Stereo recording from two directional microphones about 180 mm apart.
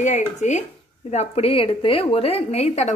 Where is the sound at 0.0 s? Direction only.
40° left (ahead or behind).